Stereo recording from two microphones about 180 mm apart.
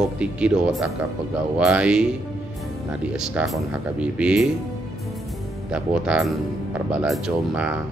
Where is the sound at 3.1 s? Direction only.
5° right (ahead or behind).